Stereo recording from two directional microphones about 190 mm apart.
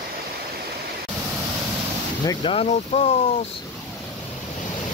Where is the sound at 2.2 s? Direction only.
25° left (ahead or behind).